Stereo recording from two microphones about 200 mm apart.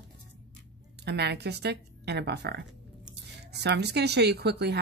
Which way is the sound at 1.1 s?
55° right (ahead or behind).